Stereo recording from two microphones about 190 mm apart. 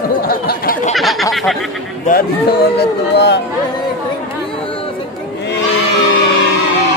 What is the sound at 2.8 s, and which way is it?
Speech, 65° left (ahead or behind).